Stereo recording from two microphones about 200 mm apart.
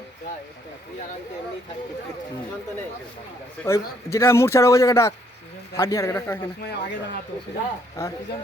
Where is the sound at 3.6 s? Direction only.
15° left (ahead or behind).